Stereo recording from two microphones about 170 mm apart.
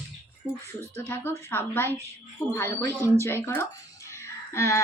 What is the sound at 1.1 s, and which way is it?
Speech, 10° left (ahead or behind).